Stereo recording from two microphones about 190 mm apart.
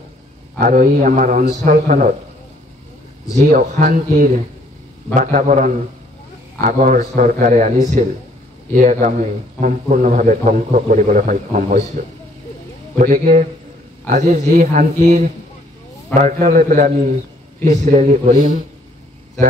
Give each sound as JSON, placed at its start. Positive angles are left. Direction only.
{"t": 0.6, "sound": "a man's voice", "side_deg": -45}
{"t": 3.3, "sound": "a man's voice", "side_deg": -45}
{"t": 13.0, "sound": "a man's voice", "side_deg": -45}